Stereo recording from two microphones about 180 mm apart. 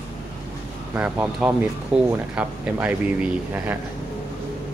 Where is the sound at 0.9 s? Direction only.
10° right (ahead or behind).